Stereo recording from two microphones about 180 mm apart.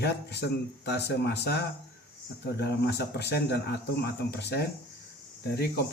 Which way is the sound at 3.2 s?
65° left (ahead or behind).